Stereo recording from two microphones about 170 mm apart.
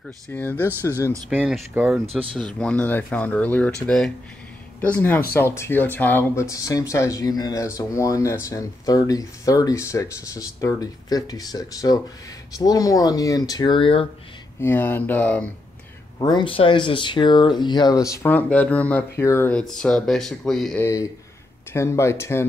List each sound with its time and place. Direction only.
0.3 s speech: 10° left (ahead or behind)
1.1 s speech: 10° right (ahead or behind); by 14.0 s 30° left (ahead or behind)
14.6 s speech: 15° left (ahead or behind)
16.2 s speech: 25° left (ahead or behind)
19.7 s speech: 5° left (ahead or behind)
20.8 s speech: 20° left (ahead or behind)